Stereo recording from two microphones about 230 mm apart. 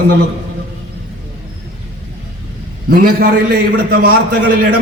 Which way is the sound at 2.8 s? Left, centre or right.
Right.